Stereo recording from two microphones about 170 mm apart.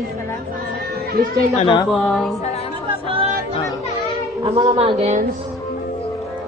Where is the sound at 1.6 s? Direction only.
25° left (ahead or behind).